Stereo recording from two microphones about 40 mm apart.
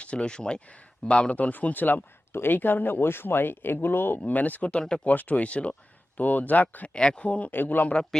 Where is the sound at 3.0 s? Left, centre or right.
Left.